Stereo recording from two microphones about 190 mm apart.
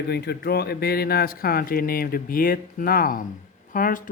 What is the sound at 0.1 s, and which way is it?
Speech, 55° left (ahead or behind).